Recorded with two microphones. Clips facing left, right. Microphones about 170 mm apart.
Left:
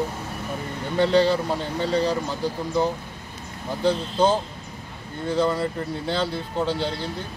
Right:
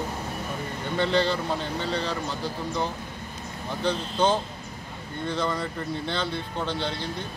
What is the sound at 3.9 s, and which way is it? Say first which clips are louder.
Speech: left 4 dB; 10° left (ahead or behind).